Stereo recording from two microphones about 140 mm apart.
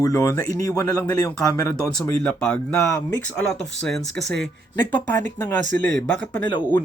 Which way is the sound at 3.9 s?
5° left (ahead or behind).